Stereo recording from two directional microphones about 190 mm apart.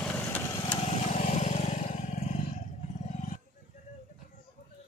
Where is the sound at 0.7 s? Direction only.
30° left (ahead or behind).